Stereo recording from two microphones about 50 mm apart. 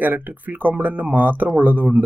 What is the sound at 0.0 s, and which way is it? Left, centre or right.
Speech, right.